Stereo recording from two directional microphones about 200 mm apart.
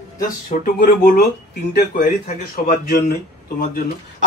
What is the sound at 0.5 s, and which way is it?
Speech, 45° left (ahead or behind).